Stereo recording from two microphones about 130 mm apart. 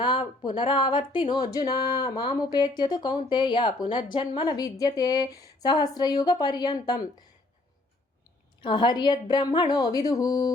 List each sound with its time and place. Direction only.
0.0 s speech: 40° left (ahead or behind)
4.5 s speech: 30° left (ahead or behind)
8.6 s speech: 35° left (ahead or behind)